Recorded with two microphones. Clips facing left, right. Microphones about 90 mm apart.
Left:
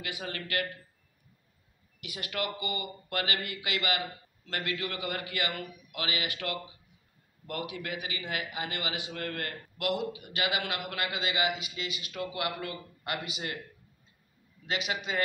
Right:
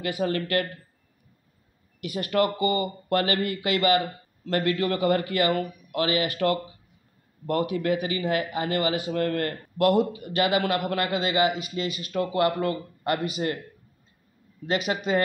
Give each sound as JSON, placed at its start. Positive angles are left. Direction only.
{"t": 0.0, "sound": "speech", "side_deg": -40}
{"t": 2.0, "sound": "a man's voice", "side_deg": -40}
{"t": 14.7, "sound": "a man's voice", "side_deg": -40}